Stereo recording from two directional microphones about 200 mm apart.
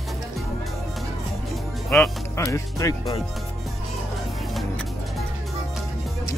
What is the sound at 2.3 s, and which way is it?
Speech, 15° left (ahead or behind).